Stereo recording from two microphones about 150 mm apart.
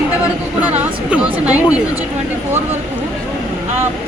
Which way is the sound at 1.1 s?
10° right (ahead or behind).